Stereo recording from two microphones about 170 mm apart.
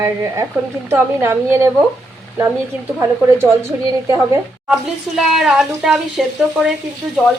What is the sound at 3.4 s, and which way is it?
Speech, 15° right (ahead or behind).